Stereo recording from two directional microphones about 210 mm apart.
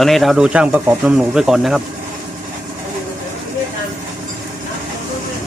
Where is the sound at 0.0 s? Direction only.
Centre (ahead or behind).